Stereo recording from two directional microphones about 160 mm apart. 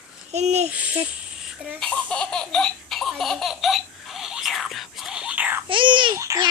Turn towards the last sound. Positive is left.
turn(degrees=-20)  # may be behind; listen again after turning